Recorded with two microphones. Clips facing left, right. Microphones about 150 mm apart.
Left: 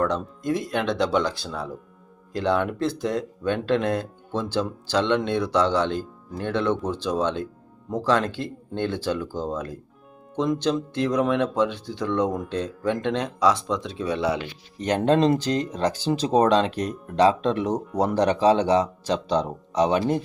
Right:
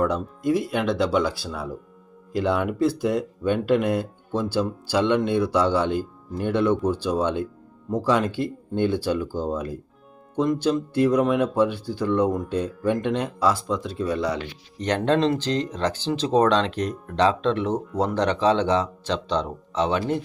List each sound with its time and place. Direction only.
0.0 s speech: 5° right (ahead or behind); by 20.0 s 15° left (ahead or behind)